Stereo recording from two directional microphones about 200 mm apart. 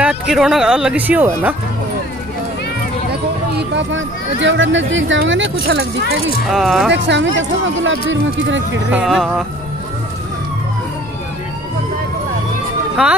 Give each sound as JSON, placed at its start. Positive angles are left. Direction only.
{"t": 0.0, "sound": "speech", "side_deg": -5}
{"t": 3.1, "sound": "speech", "side_deg": -60}
{"t": 6.5, "sound": "speech", "side_deg": 0}
{"t": 6.9, "sound": "speech", "side_deg": -60}
{"t": 8.9, "sound": "speech", "side_deg": 0}
{"t": 13.0, "sound": "speech", "side_deg": -5}